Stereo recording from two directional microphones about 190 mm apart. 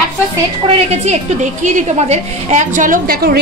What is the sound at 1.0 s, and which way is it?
A woman's voice, 40° right (ahead or behind).